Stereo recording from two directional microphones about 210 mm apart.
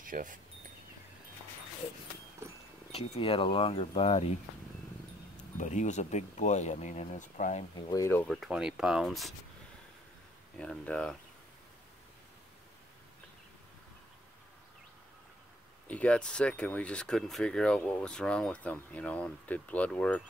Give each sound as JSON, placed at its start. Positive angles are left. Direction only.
{"t": 0.0, "sound": "speech", "side_deg": -40}
{"t": 2.4, "sound": "wild animals", "side_deg": -10}
{"t": 2.9, "sound": "speech", "side_deg": 25}
{"t": 5.6, "sound": "speech", "side_deg": 35}
{"t": 7.9, "sound": "speech", "side_deg": 10}
{"t": 10.6, "sound": "speech", "side_deg": 5}
{"t": 15.9, "sound": "speech", "side_deg": 5}